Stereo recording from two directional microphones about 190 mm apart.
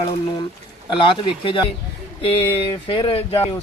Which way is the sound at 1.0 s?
25° left (ahead or behind).